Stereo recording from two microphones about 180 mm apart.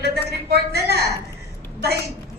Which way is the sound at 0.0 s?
60° right (ahead or behind).